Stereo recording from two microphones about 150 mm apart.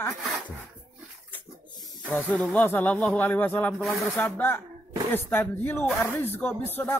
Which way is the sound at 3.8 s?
Centre (ahead or behind).